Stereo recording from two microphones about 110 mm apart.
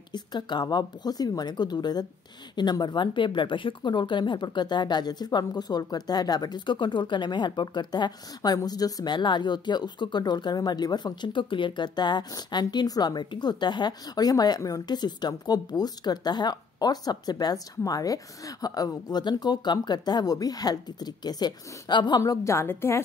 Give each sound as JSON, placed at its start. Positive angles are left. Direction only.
{"t": 0.1, "sound": "speech", "side_deg": 40}
{"t": 22.2, "sound": "a woman's voice", "side_deg": 30}